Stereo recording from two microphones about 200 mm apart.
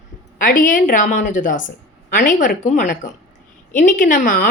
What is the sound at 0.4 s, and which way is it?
A woman's voice, 40° left (ahead or behind).